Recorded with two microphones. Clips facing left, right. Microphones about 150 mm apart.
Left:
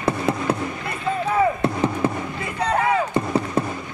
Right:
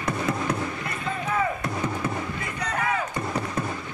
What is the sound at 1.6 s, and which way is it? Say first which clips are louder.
Music: left 7 dB; 30° left (ahead or behind).